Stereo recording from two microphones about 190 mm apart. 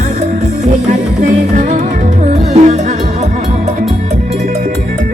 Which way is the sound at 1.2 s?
40° right (ahead or behind).